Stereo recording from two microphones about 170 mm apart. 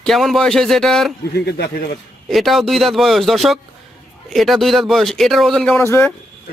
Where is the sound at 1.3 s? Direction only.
75° left (ahead or behind).